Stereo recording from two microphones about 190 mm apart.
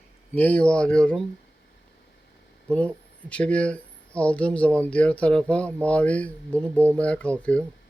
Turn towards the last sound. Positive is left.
turn(degrees=5)  # may be behind; listen again after turning